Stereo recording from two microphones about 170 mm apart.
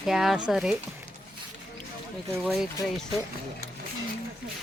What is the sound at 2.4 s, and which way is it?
Speech, centre (ahead or behind).